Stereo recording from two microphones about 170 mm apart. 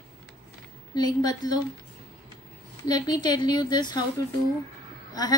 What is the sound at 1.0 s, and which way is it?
Speech, 25° left (ahead or behind).